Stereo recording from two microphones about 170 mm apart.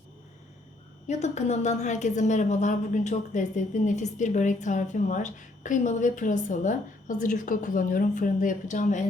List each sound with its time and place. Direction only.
1.0 s a woman's voice: 40° left (ahead or behind)